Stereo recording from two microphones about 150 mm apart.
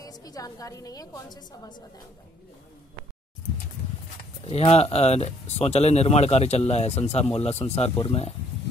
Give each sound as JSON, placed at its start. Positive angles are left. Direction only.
{"t": 0.0, "sound": "a woman's voice", "side_deg": 25}
{"t": 4.5, "sound": "speech", "side_deg": 45}